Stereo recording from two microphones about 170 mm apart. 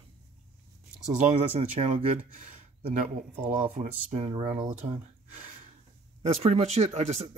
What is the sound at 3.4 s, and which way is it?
Speech, 40° right (ahead or behind).